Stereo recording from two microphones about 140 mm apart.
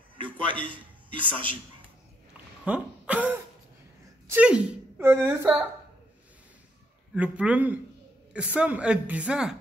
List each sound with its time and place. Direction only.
0.7 s a man's voice: 40° right (ahead or behind)
2.6 s a sound: 10° right (ahead or behind)
4.3 s a woman's voice: 10° right (ahead or behind)
7.2 s a woman's voice: 10° right (ahead or behind)